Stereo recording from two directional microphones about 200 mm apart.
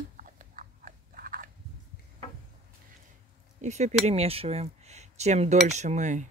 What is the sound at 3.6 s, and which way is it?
Speech, 35° right (ahead or behind).